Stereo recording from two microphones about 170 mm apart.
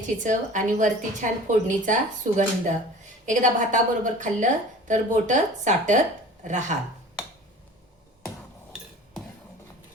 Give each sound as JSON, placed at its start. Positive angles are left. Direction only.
{"t": 0.2, "sound": "a woman's voice", "side_deg": -45}